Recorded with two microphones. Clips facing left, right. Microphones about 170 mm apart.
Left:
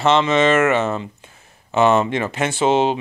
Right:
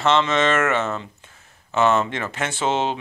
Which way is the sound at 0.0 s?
10° left (ahead or behind).